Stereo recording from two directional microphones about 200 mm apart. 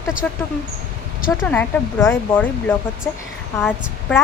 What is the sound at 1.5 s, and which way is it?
Speech, 10° left (ahead or behind).